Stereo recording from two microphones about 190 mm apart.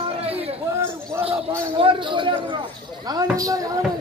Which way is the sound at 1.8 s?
30° right (ahead or behind).